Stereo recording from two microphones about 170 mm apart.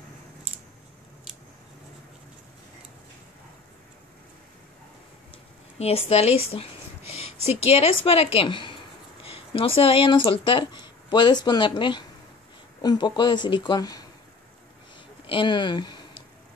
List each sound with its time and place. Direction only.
5.8 s a woman's voice: 35° left (ahead or behind)
15.2 s speech: 30° left (ahead or behind)